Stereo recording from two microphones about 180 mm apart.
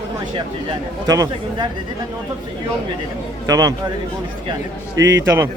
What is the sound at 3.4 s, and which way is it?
Speech, 20° right (ahead or behind).